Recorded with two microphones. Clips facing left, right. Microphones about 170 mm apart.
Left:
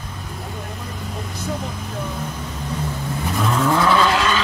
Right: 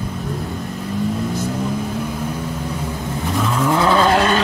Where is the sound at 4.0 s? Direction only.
50° right (ahead or behind).